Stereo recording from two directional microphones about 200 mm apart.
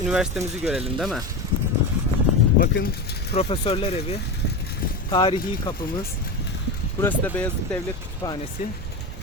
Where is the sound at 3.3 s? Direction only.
30° left (ahead or behind).